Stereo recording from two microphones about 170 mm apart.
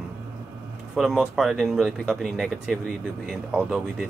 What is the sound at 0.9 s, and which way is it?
Speech, centre (ahead or behind).